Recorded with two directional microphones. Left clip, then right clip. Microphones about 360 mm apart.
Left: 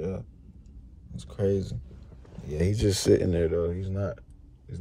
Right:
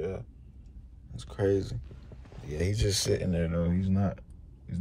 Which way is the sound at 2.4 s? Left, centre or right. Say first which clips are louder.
Left 4 dB; centre.